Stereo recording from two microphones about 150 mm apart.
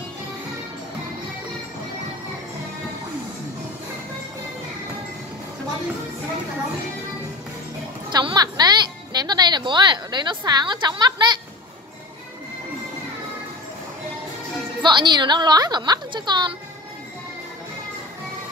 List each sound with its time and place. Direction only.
8.1 s music: 30° right (ahead or behind)
14.8 s a woman's voice: 30° right (ahead or behind)